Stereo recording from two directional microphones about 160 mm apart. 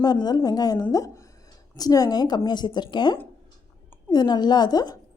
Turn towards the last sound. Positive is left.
turn(degrees=25)  # may be behind; listen again after turning